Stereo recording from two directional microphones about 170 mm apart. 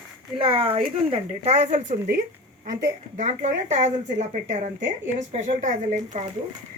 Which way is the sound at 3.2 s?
45° right (ahead or behind).